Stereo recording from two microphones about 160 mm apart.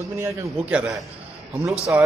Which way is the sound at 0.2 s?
20° right (ahead or behind).